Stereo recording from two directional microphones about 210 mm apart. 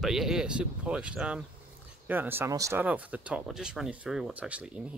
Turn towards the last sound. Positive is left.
turn(degrees=-5)  # may be behind; listen again after turning